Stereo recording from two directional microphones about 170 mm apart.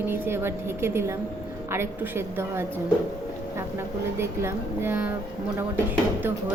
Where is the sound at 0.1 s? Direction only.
15° right (ahead or behind).